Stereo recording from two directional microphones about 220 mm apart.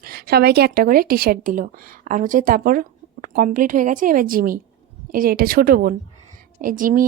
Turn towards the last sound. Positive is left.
turn(degrees=-40)  # may be behind; listen again after turning